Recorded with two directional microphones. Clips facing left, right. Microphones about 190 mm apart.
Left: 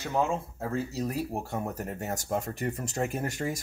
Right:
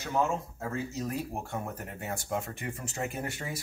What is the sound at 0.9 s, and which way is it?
Speech, 35° left (ahead or behind).